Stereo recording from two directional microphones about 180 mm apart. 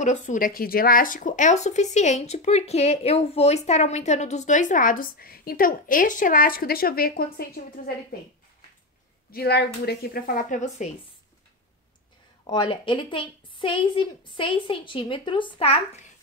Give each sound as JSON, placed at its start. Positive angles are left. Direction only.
{"t": 0.0, "sound": "speech", "side_deg": 40}
{"t": 9.3, "sound": "a woman's voice", "side_deg": 60}
{"t": 12.4, "sound": "a woman's voice", "side_deg": 25}